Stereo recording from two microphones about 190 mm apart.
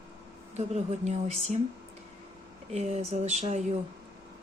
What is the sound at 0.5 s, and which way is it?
Speech, 35° right (ahead or behind).